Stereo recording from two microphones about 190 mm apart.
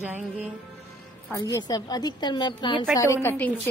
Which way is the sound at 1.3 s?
15° left (ahead or behind).